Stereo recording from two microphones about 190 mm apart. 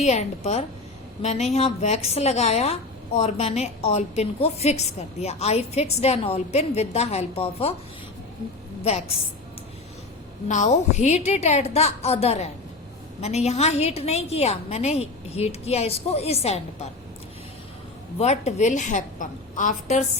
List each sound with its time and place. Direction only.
0.0 s a woman's voice: 35° left (ahead or behind)
8.8 s a woman's voice: 30° left (ahead or behind)
10.5 s a woman's voice: 40° left (ahead or behind)
18.2 s a woman's voice: 35° left (ahead or behind)